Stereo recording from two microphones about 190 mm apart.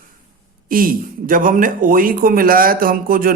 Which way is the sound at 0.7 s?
50° right (ahead or behind).